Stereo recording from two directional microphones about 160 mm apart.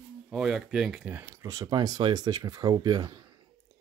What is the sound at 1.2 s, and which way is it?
Speech, 20° right (ahead or behind).